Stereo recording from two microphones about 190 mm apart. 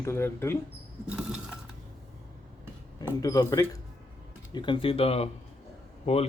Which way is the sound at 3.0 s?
20° left (ahead or behind).